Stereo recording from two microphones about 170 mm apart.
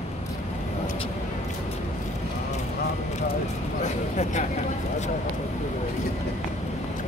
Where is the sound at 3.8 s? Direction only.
45° left (ahead or behind).